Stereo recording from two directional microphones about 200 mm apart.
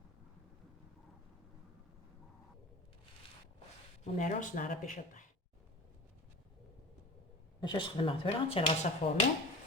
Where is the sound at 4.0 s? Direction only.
35° left (ahead or behind).